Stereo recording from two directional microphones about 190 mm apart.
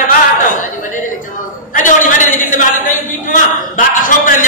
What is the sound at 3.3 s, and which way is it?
A man's voice, 45° left (ahead or behind).